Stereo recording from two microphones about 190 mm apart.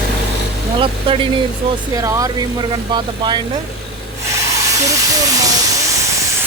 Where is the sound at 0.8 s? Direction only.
30° right (ahead or behind).